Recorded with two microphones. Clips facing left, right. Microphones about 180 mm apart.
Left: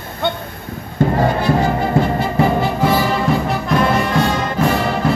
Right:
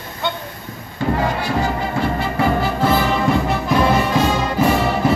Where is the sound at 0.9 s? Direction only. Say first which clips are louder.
Left 4 dB; 50° left (ahead or behind).